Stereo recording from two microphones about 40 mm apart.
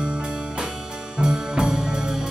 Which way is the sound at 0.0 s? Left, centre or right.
Right.